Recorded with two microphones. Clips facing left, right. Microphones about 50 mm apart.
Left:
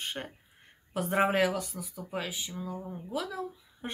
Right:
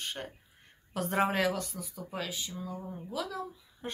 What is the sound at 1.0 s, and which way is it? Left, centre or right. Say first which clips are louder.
A woman's voice: left 3 dB; centre.